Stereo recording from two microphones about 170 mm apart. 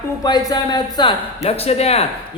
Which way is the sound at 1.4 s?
40° left (ahead or behind).